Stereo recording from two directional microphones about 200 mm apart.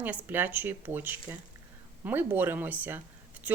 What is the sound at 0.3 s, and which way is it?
A woman's voice, 10° right (ahead or behind).